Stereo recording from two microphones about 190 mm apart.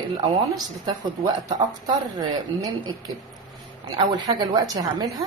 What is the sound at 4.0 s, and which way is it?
A woman's voice, 20° right (ahead or behind).